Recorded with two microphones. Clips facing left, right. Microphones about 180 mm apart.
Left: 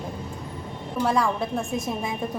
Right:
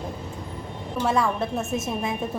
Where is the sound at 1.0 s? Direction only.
Centre (ahead or behind).